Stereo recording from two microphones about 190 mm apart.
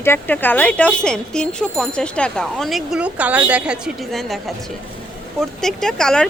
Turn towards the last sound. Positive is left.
turn(degrees=5)  # may be behind; listen again after turning